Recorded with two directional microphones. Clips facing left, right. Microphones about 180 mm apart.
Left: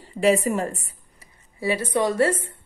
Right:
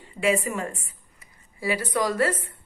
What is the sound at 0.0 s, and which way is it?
Speech, 35° left (ahead or behind).